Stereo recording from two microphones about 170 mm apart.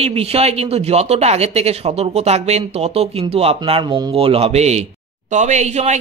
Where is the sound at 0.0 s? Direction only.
35° right (ahead or behind).